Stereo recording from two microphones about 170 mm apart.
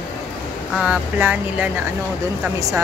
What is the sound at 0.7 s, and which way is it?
Speech, 10° right (ahead or behind).